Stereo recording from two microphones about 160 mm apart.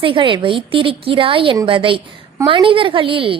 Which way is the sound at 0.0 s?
30° right (ahead or behind).